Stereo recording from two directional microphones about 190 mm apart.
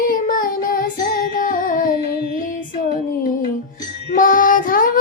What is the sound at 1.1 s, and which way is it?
Music, 50° left (ahead or behind).